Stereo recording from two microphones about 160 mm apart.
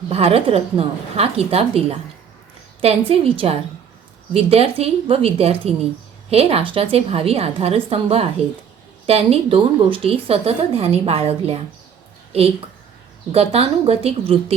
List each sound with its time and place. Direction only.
0.1 s a woman's voice: 40° right (ahead or behind)